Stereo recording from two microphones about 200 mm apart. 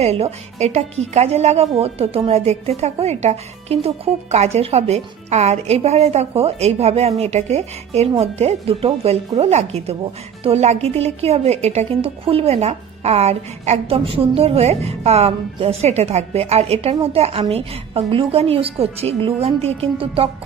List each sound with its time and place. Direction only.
0.0 s speech: 30° right (ahead or behind)